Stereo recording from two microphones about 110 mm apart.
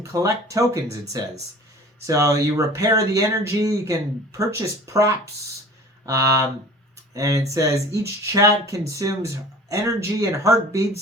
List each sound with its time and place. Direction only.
0.0 s speech: 30° right (ahead or behind)